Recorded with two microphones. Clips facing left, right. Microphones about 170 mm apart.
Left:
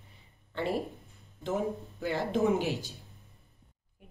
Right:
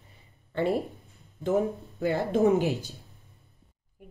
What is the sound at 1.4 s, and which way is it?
Speech, 65° right (ahead or behind).